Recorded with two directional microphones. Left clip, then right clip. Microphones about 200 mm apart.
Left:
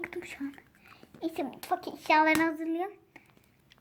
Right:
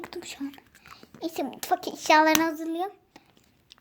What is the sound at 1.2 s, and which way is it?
Speech, 15° right (ahead or behind).